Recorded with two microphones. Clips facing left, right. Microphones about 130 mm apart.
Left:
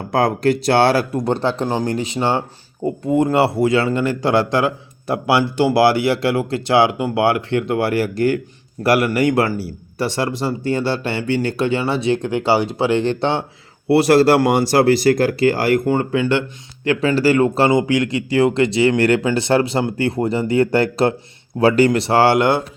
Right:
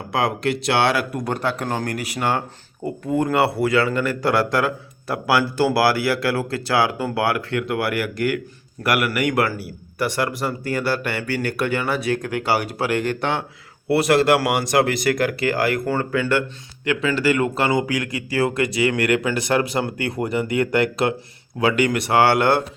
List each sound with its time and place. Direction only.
0.1 s speech: 40° left (ahead or behind)
1.1 s a man's voice: 25° left (ahead or behind)
16.8 s a man's voice: 35° left (ahead or behind); by 22.6 s 20° left (ahead or behind)